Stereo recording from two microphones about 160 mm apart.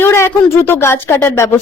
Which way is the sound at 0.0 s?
15° left (ahead or behind).